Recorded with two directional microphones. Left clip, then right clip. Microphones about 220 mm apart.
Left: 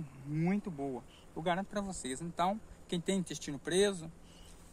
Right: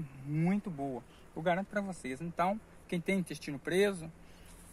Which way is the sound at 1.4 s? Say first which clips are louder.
Right 2 dB; 35° right (ahead or behind).